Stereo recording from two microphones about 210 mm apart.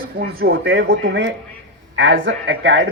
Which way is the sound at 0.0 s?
45° right (ahead or behind).